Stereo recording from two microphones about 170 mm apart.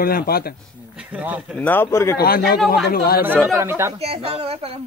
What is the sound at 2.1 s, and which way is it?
Speech, 65° left (ahead or behind).